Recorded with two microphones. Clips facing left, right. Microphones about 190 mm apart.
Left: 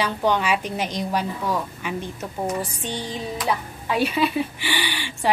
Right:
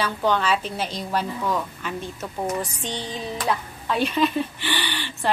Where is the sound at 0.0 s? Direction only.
15° left (ahead or behind).